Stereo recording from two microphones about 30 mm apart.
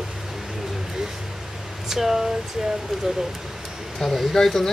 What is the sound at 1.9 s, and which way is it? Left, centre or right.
Speech, centre.